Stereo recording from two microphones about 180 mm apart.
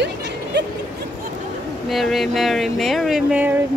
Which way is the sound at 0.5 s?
70° right (ahead or behind).